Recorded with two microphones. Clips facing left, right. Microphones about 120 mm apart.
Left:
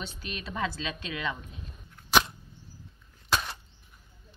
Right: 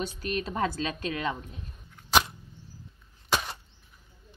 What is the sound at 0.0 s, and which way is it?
A woman's voice, 45° right (ahead or behind).